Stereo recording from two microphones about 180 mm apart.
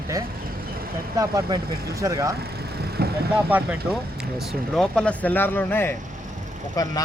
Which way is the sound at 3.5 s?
10° right (ahead or behind).